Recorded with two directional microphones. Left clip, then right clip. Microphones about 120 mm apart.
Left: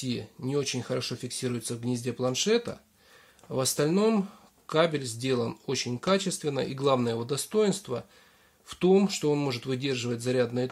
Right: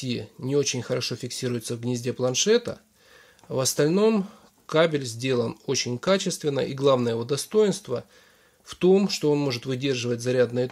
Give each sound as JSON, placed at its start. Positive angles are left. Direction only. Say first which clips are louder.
{"t": 0.0, "sound": "speech", "louder": "right 3 dB", "side_deg": -45}